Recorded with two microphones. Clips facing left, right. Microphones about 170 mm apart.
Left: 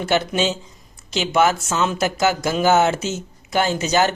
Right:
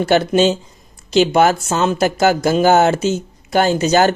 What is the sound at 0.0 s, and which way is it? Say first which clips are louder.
Speech: right 7 dB; 35° right (ahead or behind).